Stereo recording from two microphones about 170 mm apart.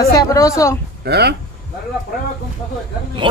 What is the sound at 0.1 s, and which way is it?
Speech, 20° left (ahead or behind).